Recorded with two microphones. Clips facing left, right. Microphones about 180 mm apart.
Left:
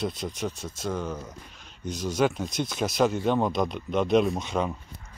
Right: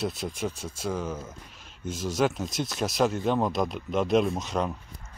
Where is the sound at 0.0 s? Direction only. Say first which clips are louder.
Even; 5° right (ahead or behind).